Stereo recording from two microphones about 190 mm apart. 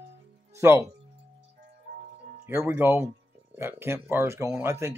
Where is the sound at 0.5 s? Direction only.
15° right (ahead or behind).